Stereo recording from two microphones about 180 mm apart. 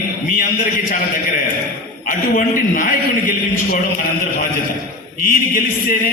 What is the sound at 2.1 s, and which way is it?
Speech, 50° left (ahead or behind).